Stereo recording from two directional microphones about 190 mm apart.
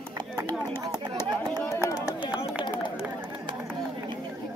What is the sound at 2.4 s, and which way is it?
Run, 25° left (ahead or behind).